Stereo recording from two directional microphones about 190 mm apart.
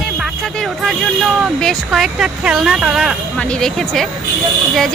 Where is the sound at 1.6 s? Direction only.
Centre (ahead or behind).